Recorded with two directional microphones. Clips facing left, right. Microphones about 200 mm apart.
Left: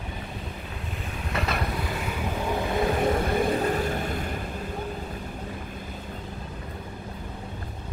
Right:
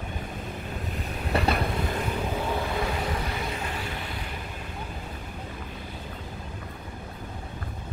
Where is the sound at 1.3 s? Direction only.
35° right (ahead or behind).